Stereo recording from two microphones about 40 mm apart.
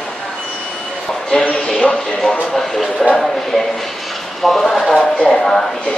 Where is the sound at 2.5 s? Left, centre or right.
Centre.